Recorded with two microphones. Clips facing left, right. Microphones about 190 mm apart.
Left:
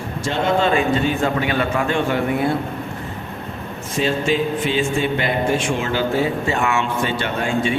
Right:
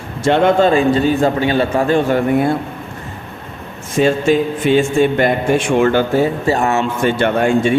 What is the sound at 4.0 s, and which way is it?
A man's voice, 50° right (ahead or behind).